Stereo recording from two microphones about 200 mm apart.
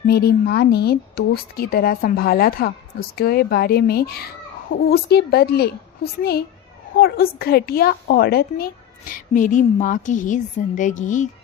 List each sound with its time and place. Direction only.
0.1 s a woman's voice: 50° left (ahead or behind)